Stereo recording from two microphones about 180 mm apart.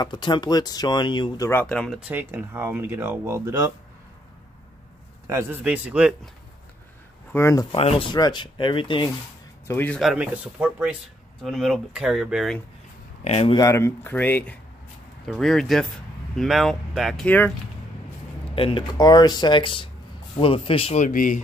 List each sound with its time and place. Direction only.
0.0 s speech: 25° left (ahead or behind); by 2.0 s 5° left (ahead or behind)
2.0 s speech: 10° right (ahead or behind)
5.2 s speech: 15° right (ahead or behind)
7.3 s speech: 15° left (ahead or behind)
7.7 s speech: 30° left (ahead or behind)
9.7 s speech: 10° left (ahead or behind)
9.9 s speech: 5° right (ahead or behind)
13.2 s speech: 35° left (ahead or behind)
13.6 s speech: 15° left (ahead or behind)
18.5 s speech: 30° left (ahead or behind)
21.1 s speech: 50° left (ahead or behind)